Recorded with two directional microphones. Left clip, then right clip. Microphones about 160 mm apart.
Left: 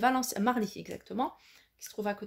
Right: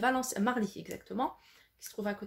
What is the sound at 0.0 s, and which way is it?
Speech, 35° left (ahead or behind).